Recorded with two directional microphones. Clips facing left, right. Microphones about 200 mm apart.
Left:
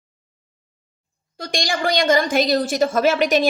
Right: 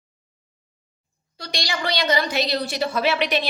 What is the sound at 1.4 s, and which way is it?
A woman's voice, 50° left (ahead or behind).